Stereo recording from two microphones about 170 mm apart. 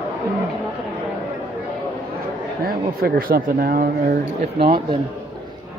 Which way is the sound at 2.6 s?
60° right (ahead or behind).